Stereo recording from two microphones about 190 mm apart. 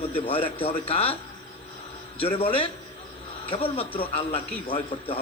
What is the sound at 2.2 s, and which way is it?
A man's voice, 30° left (ahead or behind).